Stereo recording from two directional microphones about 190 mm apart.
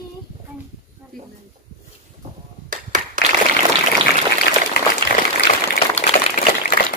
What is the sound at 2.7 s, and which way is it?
Clapping, 45° right (ahead or behind).